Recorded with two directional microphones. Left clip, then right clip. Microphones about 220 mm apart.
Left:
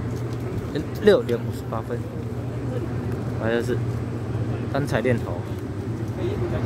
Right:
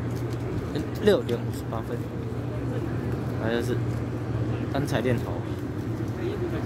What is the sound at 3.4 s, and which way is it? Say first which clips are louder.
Speech: left 4 dB; 35° left (ahead or behind).